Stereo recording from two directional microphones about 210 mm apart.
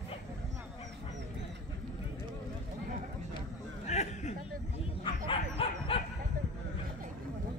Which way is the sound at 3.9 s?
35° left (ahead or behind).